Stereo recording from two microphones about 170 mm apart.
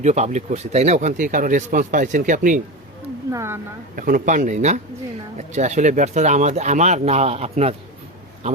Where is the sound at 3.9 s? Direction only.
55° right (ahead or behind).